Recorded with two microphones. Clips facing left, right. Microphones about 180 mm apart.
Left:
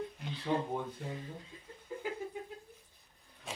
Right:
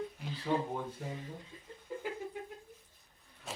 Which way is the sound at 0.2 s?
Centre (ahead or behind).